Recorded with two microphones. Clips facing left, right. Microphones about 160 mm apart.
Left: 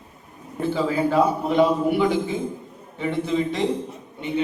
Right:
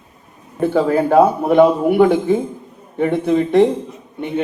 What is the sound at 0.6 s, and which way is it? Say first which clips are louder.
Speech: right 7 dB; 60° right (ahead or behind).